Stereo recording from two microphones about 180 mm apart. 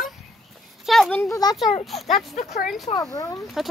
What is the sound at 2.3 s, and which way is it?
Speech, 40° left (ahead or behind).